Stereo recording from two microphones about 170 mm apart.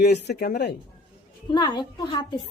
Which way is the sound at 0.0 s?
70° left (ahead or behind).